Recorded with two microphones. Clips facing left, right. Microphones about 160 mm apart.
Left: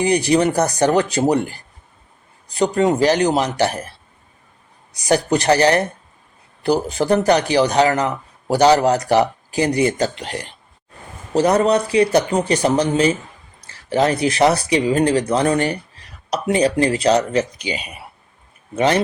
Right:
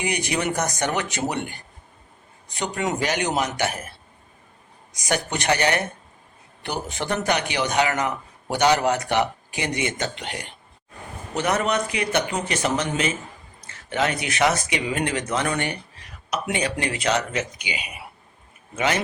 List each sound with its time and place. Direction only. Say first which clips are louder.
0.0 s speech: left 10 dB; 35° left (ahead or behind)
4.9 s speech: left 9 dB; 35° left (ahead or behind)
18.8 s speech: left 7 dB; 35° left (ahead or behind)